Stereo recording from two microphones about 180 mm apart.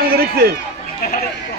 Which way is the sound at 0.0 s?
55° right (ahead or behind).